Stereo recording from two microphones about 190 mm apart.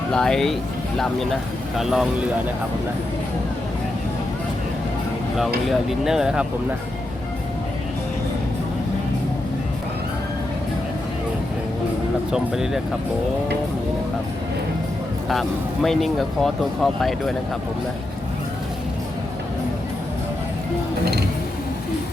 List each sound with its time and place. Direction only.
0.1 s speech: 5° left (ahead or behind)
5.6 s speech: centre (ahead or behind)
12.3 s speech: 5° right (ahead or behind)
15.3 s speech: centre (ahead or behind)
21.0 s speech: 55° right (ahead or behind)